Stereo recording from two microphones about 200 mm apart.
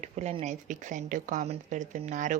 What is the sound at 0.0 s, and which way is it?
Speech, 35° right (ahead or behind).